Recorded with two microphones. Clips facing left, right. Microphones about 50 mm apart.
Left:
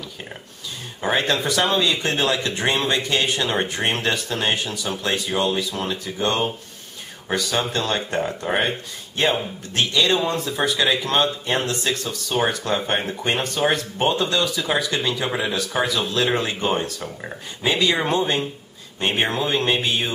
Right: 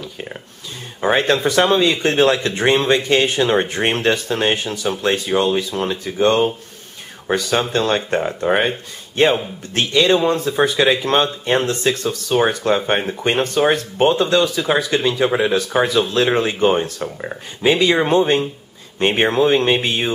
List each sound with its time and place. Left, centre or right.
1.0 s speech: right
2.8 s speech: centre
3.1 s speech: right; by 6.1 s centre
7.2 s speech: right
12.3 s speech: centre
13.2 s speech: right
19.2 s speech: right